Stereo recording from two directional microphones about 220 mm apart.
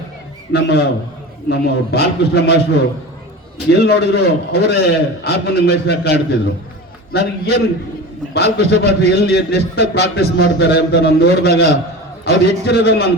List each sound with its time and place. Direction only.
0.5 s a man's voice: 50° left (ahead or behind)
3.7 s a man's voice: 50° left (ahead or behind)